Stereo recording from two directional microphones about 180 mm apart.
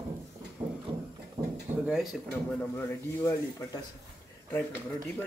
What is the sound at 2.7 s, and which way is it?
Speech, 15° left (ahead or behind).